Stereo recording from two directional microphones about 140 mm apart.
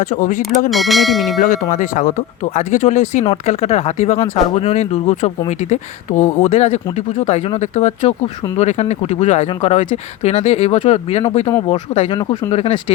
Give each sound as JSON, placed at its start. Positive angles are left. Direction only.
{"t": 0.0, "sound": "speech", "side_deg": 65}
{"t": 0.7, "sound": "speech", "side_deg": 0}
{"t": 1.7, "sound": "speech", "side_deg": 65}